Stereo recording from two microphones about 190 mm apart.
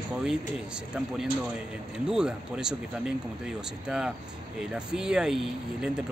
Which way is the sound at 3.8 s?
5° right (ahead or behind).